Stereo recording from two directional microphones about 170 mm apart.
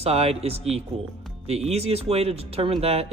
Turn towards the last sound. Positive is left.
turn(degrees=-35)  # may be behind; listen again after turning